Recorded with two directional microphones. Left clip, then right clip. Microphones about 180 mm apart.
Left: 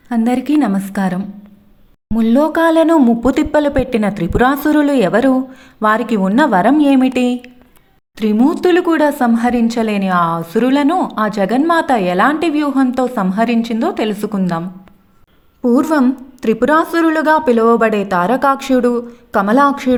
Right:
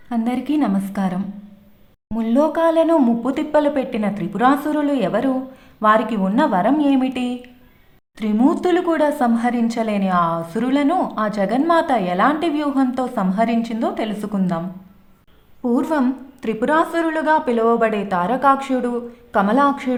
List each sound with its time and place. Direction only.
0.1 s a woman's voice: 30° left (ahead or behind)
15.6 s a woman's voice: 25° left (ahead or behind)